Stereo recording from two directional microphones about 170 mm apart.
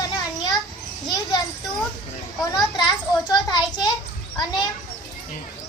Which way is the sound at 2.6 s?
25° left (ahead or behind).